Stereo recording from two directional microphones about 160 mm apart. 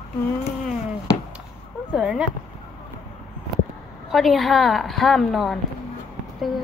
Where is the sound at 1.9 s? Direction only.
5° right (ahead or behind).